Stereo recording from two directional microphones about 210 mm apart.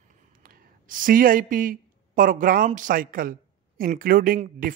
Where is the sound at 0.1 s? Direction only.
40° right (ahead or behind).